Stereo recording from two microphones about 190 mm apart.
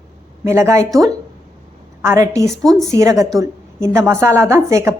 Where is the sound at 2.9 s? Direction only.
15° right (ahead or behind).